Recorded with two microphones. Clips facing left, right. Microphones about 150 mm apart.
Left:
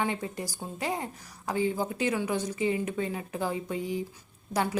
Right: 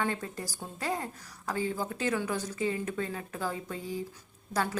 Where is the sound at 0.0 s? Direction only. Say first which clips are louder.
Left 2 dB; 15° left (ahead or behind).